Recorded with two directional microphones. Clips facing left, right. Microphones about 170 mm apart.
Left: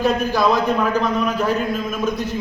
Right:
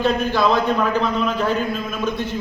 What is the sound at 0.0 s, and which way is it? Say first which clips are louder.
A man's voice: left 1 dB; 5° left (ahead or behind).